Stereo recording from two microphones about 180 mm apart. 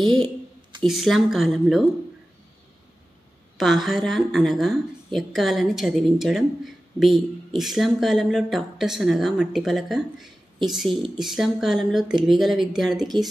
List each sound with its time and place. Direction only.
0.0 s a woman's voice: centre (ahead or behind)
3.5 s a woman's voice: centre (ahead or behind)